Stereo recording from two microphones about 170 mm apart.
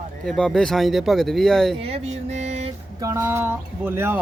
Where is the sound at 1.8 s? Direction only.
35° right (ahead or behind).